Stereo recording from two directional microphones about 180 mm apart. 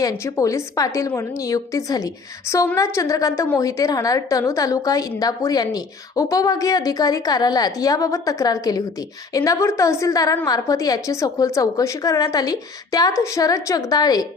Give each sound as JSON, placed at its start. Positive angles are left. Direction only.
{"t": 0.0, "sound": "a woman's voice", "side_deg": 15}